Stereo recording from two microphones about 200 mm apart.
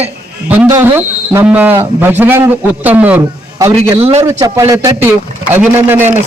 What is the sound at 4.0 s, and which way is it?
Speech, 35° right (ahead or behind).